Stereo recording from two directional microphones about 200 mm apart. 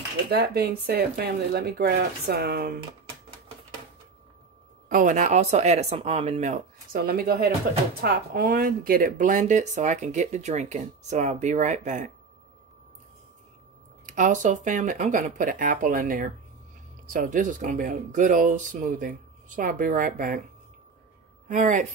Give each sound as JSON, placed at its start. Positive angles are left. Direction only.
{"t": 0.3, "sound": "speech", "side_deg": -50}
{"t": 4.8, "sound": "speech", "side_deg": -40}
{"t": 14.0, "sound": "speech", "side_deg": -40}
{"t": 21.5, "sound": "speech", "side_deg": -40}